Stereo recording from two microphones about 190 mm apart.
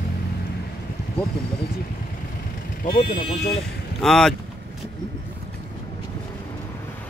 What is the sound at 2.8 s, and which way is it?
Speech, 40° left (ahead or behind).